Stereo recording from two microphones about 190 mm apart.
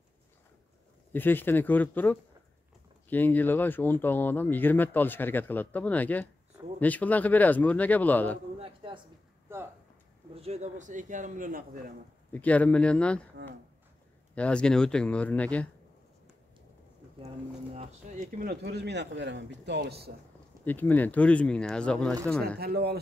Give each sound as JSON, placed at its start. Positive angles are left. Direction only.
{"t": 1.1, "sound": "speech", "side_deg": 10}
{"t": 8.5, "sound": "a sound", "side_deg": -30}
{"t": 10.3, "sound": "speech", "side_deg": -35}
{"t": 12.3, "sound": "speech", "side_deg": 10}
{"t": 14.3, "sound": "speech", "side_deg": 5}
{"t": 18.4, "sound": "speech", "side_deg": -55}
{"t": 20.6, "sound": "speech", "side_deg": 10}
{"t": 22.6, "sound": "speech", "side_deg": -55}